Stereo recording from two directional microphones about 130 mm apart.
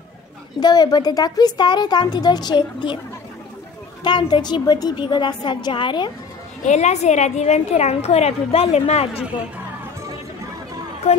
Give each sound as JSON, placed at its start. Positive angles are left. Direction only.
{"t": 0.6, "sound": "a woman's voice", "side_deg": 30}
{"t": 4.0, "sound": "a woman's voice", "side_deg": 35}
{"t": 6.6, "sound": "a woman's voice", "side_deg": 60}